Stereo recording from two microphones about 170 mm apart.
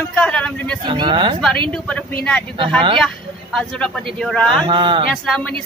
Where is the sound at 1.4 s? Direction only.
5° left (ahead or behind).